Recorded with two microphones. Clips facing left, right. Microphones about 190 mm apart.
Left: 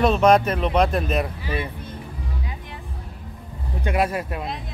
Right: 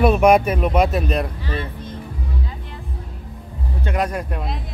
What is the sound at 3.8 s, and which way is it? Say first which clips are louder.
Speech: left 1 dB; 5° left (ahead or behind).